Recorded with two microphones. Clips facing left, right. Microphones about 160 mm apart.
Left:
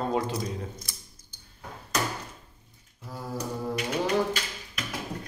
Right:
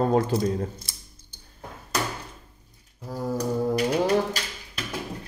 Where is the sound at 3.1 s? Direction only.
40° right (ahead or behind).